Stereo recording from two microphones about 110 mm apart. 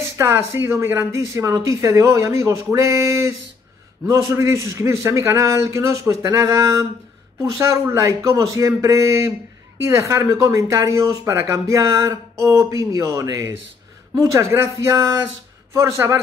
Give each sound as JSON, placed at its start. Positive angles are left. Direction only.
{"t": 0.2, "sound": "speech", "side_deg": -25}